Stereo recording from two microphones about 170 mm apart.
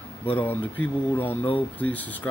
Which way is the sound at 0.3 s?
10° left (ahead or behind).